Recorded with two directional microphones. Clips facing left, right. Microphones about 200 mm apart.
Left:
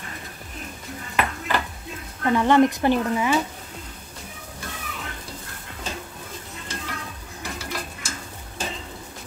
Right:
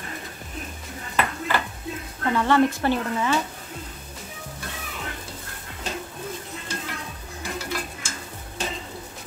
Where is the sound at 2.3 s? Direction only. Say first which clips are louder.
Left 3 dB; 15° left (ahead or behind).